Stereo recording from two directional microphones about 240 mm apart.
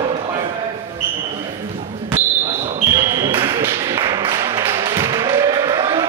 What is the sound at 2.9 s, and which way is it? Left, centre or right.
Tap, centre.